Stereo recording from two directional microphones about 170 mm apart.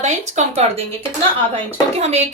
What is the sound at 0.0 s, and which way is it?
Speech, 45° right (ahead or behind).